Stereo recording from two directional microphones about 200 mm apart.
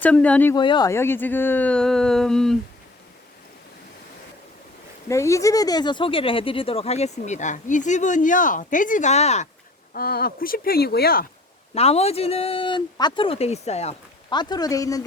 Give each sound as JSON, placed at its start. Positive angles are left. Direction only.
{"t": 0.0, "sound": "speech", "side_deg": 5}
{"t": 0.5, "sound": "speech", "side_deg": 20}
{"t": 5.0, "sound": "speech", "side_deg": 15}
{"t": 9.9, "sound": "speech", "side_deg": 50}
{"t": 11.7, "sound": "speech", "side_deg": 30}
{"t": 14.3, "sound": "speech", "side_deg": 20}